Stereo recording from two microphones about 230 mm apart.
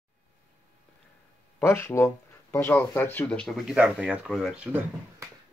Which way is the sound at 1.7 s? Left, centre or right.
Centre.